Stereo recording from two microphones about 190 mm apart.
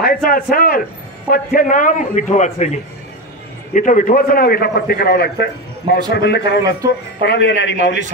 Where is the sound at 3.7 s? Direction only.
45° left (ahead or behind).